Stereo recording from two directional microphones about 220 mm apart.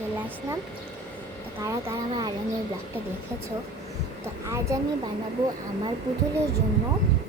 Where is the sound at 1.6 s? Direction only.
15° right (ahead or behind).